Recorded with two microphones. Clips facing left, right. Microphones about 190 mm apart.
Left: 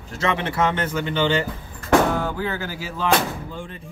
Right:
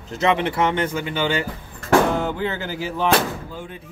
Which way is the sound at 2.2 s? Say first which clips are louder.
Right 2 dB; 20° right (ahead or behind).